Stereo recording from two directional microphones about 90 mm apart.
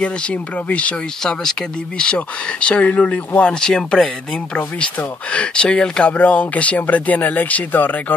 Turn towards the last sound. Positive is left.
turn(degrees=20)  # may be behind; listen again after turning